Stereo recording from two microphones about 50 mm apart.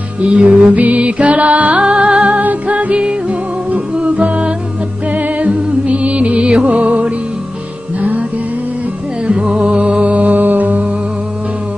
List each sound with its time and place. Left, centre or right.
0.2 s music: right
9.3 s music: right